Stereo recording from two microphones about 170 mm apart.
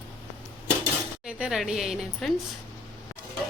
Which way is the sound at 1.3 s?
5° right (ahead or behind).